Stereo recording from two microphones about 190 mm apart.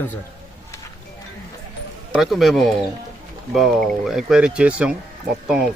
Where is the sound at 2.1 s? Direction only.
Centre (ahead or behind).